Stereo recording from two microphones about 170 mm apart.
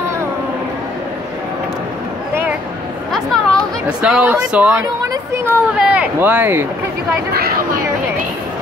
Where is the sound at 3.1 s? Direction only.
Centre (ahead or behind).